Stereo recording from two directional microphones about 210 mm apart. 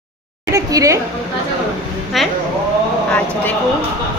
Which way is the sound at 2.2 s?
Centre (ahead or behind).